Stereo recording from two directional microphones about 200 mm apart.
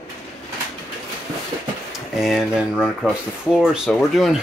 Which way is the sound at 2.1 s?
Centre (ahead or behind).